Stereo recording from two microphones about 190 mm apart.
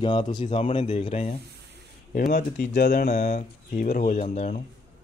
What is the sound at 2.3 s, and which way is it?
Speech, 50° left (ahead or behind).